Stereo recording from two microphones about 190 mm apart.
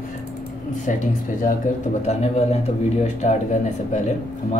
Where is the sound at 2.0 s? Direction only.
35° left (ahead or behind).